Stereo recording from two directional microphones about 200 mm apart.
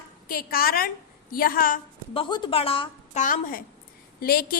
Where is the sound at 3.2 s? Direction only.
45° left (ahead or behind).